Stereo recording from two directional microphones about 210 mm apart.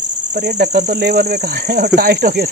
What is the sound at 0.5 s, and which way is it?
Speech, 50° right (ahead or behind).